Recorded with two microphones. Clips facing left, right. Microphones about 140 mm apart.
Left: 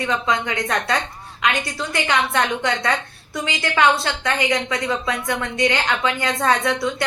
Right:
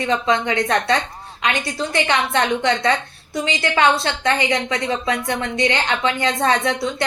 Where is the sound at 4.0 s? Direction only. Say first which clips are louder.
Right 2 dB; 25° right (ahead or behind).